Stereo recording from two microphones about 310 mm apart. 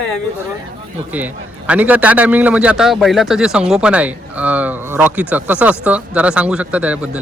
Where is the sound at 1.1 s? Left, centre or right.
Centre.